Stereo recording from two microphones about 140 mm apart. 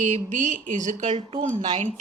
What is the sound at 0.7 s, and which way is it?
Speech, 65° right (ahead or behind).